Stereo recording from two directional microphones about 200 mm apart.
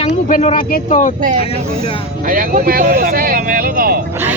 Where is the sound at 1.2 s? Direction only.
45° right (ahead or behind).